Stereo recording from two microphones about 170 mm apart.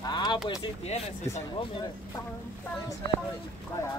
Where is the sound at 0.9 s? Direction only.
40° left (ahead or behind).